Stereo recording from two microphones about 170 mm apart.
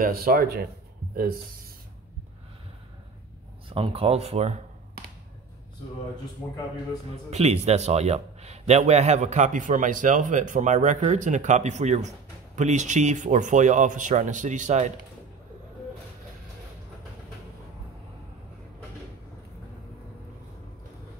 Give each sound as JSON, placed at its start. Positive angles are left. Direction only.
{"t": 0.0, "sound": "speech", "side_deg": -60}
{"t": 3.6, "sound": "speech", "side_deg": -30}
{"t": 7.2, "sound": "a man's voice", "side_deg": -40}